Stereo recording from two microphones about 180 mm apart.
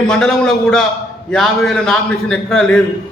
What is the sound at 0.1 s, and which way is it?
A man's voice, 5° left (ahead or behind).